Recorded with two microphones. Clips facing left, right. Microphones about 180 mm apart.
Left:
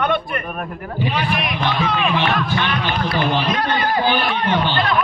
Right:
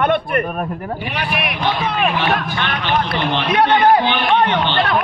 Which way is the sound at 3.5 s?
70° right (ahead or behind).